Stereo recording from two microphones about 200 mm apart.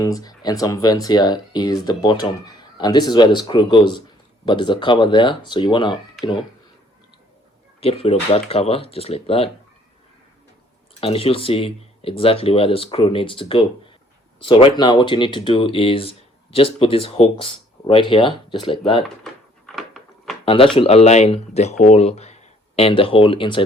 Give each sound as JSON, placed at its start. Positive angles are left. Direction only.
{"t": 0.0, "sound": "speech", "side_deg": 20}
{"t": 7.8, "sound": "speech", "side_deg": 30}
{"t": 11.0, "sound": "speech", "side_deg": 30}
{"t": 19.0, "sound": "a sound", "side_deg": 0}
{"t": 20.4, "sound": "speech", "side_deg": 25}